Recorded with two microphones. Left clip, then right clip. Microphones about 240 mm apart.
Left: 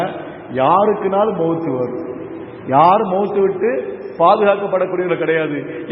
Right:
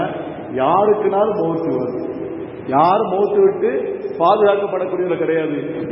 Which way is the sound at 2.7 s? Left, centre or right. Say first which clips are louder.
Left 3 dB; left.